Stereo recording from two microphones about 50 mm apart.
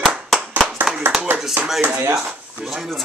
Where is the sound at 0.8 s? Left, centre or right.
Right.